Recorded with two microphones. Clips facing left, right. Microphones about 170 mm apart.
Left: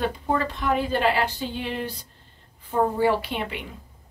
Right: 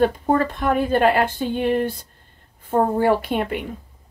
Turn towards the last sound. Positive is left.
turn(degrees=-50)  # may be behind; listen again after turning